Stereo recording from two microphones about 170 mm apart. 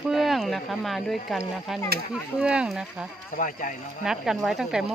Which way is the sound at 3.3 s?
50° left (ahead or behind).